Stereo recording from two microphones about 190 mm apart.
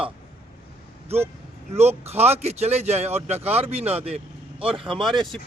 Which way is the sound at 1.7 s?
35° right (ahead or behind).